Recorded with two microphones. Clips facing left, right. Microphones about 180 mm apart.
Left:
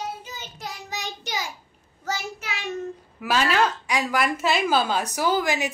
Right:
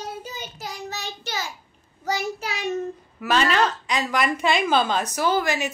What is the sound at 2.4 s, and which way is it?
Child singing, 35° right (ahead or behind).